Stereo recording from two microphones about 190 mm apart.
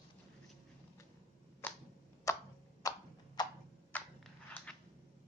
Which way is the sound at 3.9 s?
10° left (ahead or behind).